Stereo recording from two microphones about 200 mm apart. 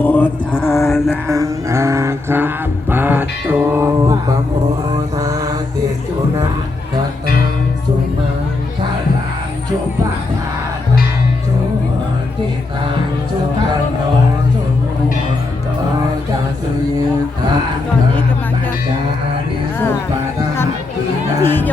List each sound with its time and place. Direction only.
0.0 s mantra: 10° left (ahead or behind)
1.3 s a sound: 15° right (ahead or behind)
2.9 s mantra: 10° right (ahead or behind)
21.4 s music: 10° left (ahead or behind)